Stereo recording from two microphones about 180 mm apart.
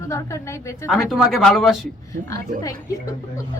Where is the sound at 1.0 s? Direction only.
Centre (ahead or behind).